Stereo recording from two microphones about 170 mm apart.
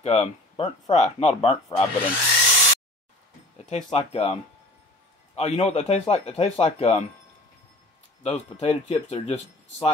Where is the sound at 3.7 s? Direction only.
40° left (ahead or behind).